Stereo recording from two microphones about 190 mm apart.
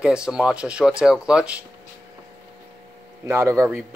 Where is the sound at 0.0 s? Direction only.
5° right (ahead or behind).